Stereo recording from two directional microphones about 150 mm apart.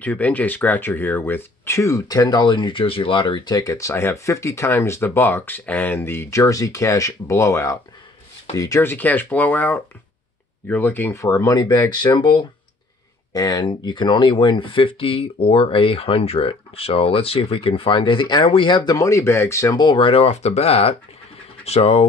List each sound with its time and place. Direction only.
0.0 s speech: 10° left (ahead or behind); by 22.0 s 45° left (ahead or behind)